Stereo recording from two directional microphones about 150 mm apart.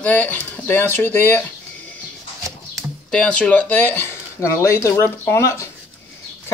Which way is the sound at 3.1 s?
5° left (ahead or behind).